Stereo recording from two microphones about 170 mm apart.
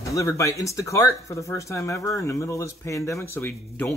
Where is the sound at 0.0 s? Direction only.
20° left (ahead or behind).